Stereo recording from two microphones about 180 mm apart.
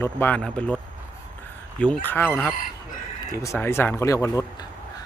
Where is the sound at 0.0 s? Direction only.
10° left (ahead or behind).